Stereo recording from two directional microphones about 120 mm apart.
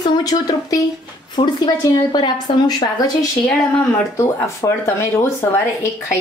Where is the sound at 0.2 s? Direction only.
30° left (ahead or behind).